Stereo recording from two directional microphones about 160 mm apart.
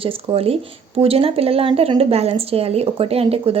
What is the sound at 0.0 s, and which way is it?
Speech, 35° right (ahead or behind).